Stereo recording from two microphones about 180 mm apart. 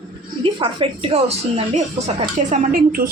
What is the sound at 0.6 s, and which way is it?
A woman's voice, 30° right (ahead or behind).